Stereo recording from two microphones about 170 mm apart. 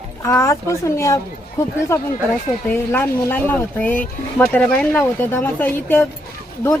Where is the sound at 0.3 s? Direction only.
15° left (ahead or behind).